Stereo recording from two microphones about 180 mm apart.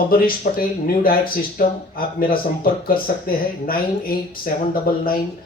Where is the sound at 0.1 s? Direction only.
55° left (ahead or behind).